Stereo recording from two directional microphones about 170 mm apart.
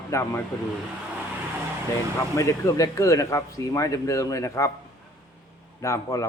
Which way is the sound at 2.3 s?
20° left (ahead or behind).